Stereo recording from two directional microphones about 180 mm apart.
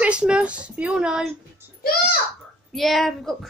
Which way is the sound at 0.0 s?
5° right (ahead or behind).